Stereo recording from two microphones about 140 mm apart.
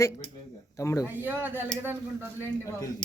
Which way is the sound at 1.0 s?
10° right (ahead or behind).